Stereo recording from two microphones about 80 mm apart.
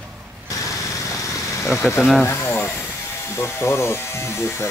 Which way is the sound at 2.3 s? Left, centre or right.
Left.